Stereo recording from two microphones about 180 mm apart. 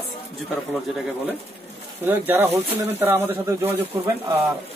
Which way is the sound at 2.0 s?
10° right (ahead or behind).